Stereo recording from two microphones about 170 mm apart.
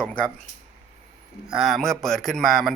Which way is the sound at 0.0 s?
10° left (ahead or behind).